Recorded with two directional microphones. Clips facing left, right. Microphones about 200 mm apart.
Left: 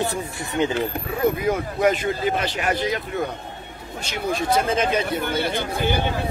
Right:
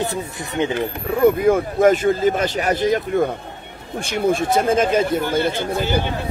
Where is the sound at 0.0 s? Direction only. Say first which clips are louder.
Right 1 dB; 20° right (ahead or behind).